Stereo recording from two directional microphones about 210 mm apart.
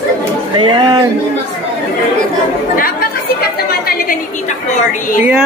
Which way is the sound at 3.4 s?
45° left (ahead or behind).